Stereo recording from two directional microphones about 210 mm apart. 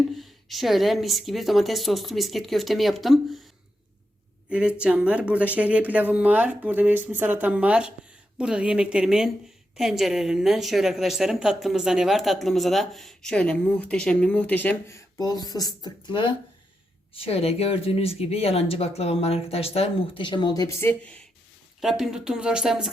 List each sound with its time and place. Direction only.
0.2 s a woman's voice: centre (ahead or behind)
4.4 s a woman's voice: 5° right (ahead or behind)